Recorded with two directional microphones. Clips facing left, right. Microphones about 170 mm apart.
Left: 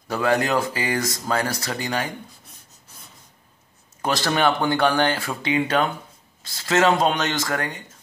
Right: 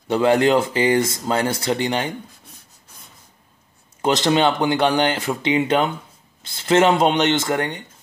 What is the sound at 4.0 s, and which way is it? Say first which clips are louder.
Speech: right 4 dB; 20° right (ahead or behind).